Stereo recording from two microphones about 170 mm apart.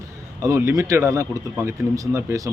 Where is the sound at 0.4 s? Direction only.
15° right (ahead or behind).